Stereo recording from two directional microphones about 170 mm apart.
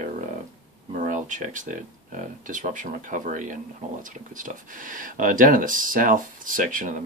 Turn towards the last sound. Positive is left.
turn(degrees=-50)  # may be behind; listen again after turning